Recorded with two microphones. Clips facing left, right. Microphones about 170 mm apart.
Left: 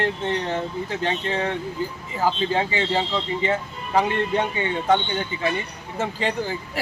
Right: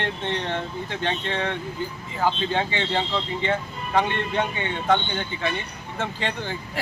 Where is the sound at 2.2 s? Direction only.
5° left (ahead or behind).